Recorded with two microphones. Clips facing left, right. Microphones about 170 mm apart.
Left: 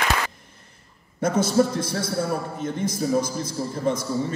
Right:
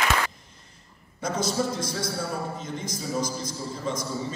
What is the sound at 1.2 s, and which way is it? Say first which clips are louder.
A man's voice: left 7 dB; 55° left (ahead or behind).